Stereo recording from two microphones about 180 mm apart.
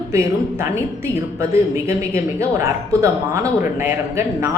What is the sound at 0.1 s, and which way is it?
Speech, 15° right (ahead or behind).